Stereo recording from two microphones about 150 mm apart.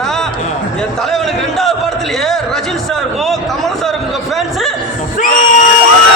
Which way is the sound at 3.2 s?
Centre (ahead or behind).